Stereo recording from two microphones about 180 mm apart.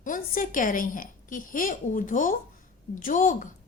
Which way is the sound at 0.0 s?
50° left (ahead or behind).